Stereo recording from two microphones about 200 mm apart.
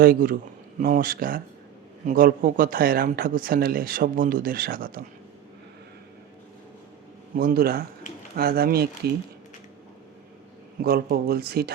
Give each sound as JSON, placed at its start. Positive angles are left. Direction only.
{"t": 0.0, "sound": "speech", "side_deg": -45}
{"t": 7.3, "sound": "speech", "side_deg": -50}
{"t": 10.8, "sound": "speech", "side_deg": -50}